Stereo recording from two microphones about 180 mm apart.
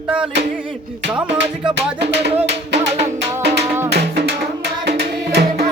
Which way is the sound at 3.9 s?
70° right (ahead or behind).